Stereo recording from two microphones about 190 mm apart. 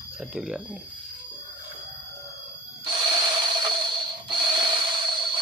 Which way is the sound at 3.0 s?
25° right (ahead or behind).